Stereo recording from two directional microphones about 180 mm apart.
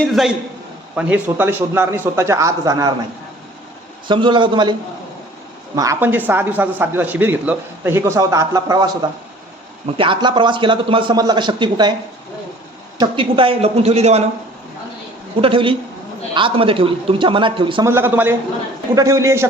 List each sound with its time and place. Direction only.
0.0 s a man's voice: centre (ahead or behind); by 2.9 s 20° right (ahead or behind)
4.1 s a man's voice: 25° right (ahead or behind)
5.7 s speech: 20° right (ahead or behind)
10.0 s a man's voice: 25° right (ahead or behind)
13.0 s speech: 30° right (ahead or behind)
15.4 s a man's voice: 30° right (ahead or behind)
17.8 s speech: 15° right (ahead or behind)